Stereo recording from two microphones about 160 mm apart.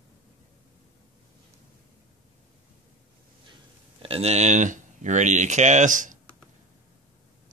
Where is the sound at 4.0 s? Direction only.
40° right (ahead or behind); by 6.1 s 55° right (ahead or behind).